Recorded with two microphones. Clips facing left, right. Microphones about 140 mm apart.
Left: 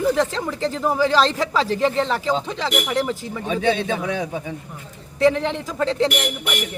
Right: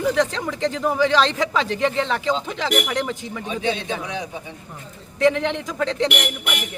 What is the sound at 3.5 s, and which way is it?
Speech, 50° left (ahead or behind).